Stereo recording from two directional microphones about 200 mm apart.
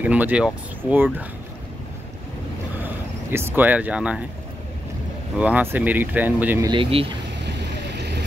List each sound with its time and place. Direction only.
0.0 s speech: 5° right (ahead or behind)
2.8 s speech: 10° right (ahead or behind)
5.4 s speech: 10° right (ahead or behind)
6.7 s speech: 25° right (ahead or behind)
7.4 s vehicle: 55° right (ahead or behind)